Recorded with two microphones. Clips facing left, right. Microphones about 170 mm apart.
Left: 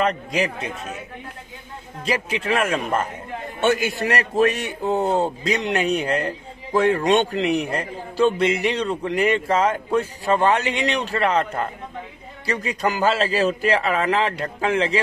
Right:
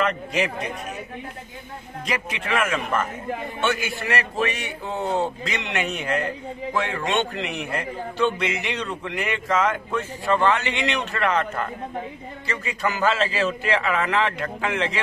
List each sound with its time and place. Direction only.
0.0 s a man's voice: 35° left (ahead or behind)
2.0 s a man's voice: 30° left (ahead or behind)